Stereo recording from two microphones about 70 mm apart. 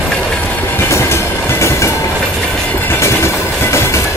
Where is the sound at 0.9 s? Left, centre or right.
Left.